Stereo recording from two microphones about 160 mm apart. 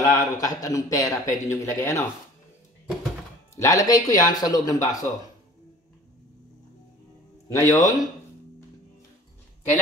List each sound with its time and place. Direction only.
0.0 s a man's voice: 20° left (ahead or behind)
3.5 s a man's voice: 20° left (ahead or behind)
7.5 s a man's voice: 20° left (ahead or behind)